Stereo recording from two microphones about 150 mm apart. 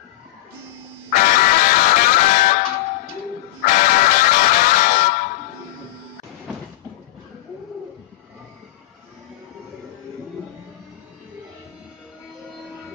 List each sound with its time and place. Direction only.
1.1 s music: 65° left (ahead or behind)
3.6 s music: 60° left (ahead or behind)